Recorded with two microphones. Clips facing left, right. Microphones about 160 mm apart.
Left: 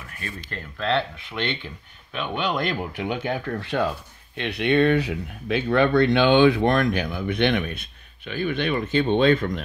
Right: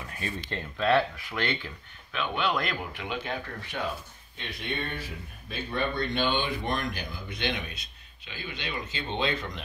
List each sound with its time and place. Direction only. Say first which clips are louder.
0.2 s speech: right 1 dB; 25° right (ahead or behind)
0.7 s speech: even; 5° right (ahead or behind)
2.1 s speech: left 3 dB; 20° left (ahead or behind)
3.1 s speech: left 7 dB; 70° left (ahead or behind)